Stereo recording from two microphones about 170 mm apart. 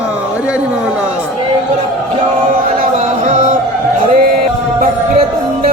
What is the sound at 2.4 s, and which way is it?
Music, 50° right (ahead or behind).